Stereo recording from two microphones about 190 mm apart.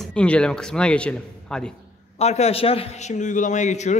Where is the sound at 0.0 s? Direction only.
5° left (ahead or behind).